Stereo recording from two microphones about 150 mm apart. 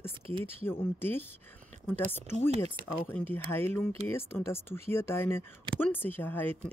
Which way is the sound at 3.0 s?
15° left (ahead or behind).